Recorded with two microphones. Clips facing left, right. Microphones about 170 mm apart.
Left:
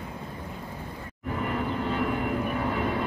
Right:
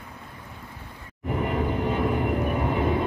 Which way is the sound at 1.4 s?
15° right (ahead or behind).